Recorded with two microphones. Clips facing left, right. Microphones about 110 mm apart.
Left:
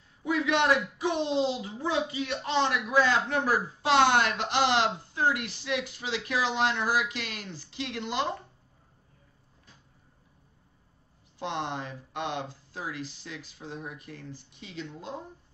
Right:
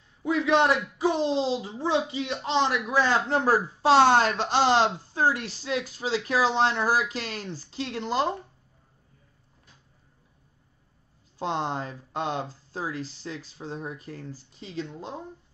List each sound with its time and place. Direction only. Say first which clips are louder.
0.2 s a sound: right 4 dB; 30° right (ahead or behind)
0.9 s speech: right 3 dB; 30° right (ahead or behind)
11.3 s speech: right 4 dB; 35° right (ahead or behind)